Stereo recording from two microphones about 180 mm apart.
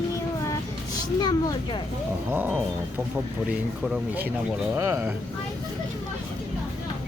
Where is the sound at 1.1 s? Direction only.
25° left (ahead or behind).